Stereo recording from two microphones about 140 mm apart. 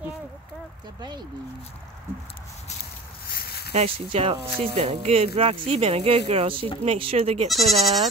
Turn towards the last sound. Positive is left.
turn(degrees=0)  # may be behind; listen again after turning